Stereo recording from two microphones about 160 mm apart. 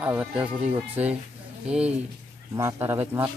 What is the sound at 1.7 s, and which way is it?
Speech, 5° right (ahead or behind).